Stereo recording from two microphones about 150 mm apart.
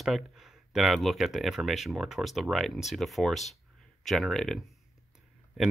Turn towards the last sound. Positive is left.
turn(degrees=-5)  # may be behind; listen again after turning